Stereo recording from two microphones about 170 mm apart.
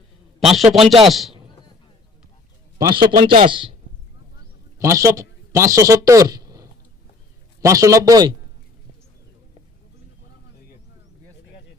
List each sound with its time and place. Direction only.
0.3 s a man's voice: centre (ahead or behind)
2.7 s a man's voice: 25° right (ahead or behind)
4.8 s a man's voice: 15° right (ahead or behind)